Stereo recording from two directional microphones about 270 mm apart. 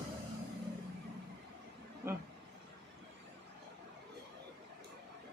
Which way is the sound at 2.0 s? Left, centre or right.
Centre.